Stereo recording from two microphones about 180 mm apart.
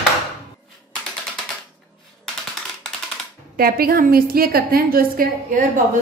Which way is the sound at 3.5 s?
55° right (ahead or behind).